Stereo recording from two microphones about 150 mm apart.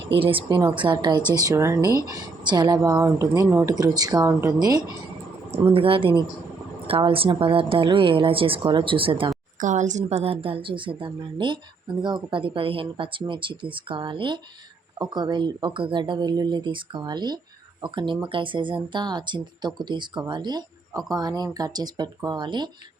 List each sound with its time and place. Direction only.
0.2 s a woman's voice: 35° right (ahead or behind); by 1.9 s 20° right (ahead or behind)
2.4 s speech: 30° right (ahead or behind)
5.6 s a woman's voice: 35° right (ahead or behind)
9.6 s a woman's voice: 55° right (ahead or behind); by 22.7 s 30° right (ahead or behind)